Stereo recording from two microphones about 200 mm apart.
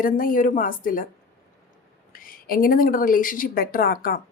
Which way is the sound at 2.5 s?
45° left (ahead or behind).